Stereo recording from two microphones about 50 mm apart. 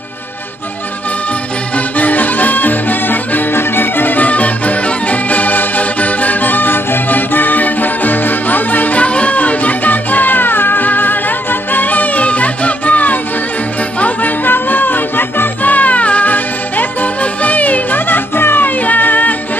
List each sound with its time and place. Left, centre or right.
2.0 s music: left